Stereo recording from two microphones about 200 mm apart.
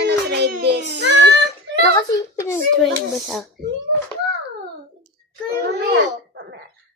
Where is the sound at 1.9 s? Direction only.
20° left (ahead or behind).